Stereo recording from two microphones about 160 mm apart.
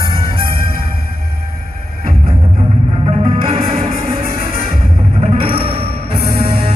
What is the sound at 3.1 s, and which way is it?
Music, 35° right (ahead or behind).